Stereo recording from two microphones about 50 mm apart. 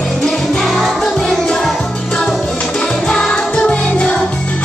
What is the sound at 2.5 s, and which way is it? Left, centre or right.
Music, left.